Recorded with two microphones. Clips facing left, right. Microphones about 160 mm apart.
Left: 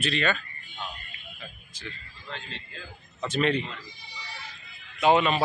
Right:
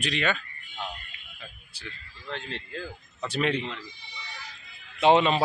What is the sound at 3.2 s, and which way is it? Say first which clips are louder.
Speech: left 2 dB; 10° right (ahead or behind).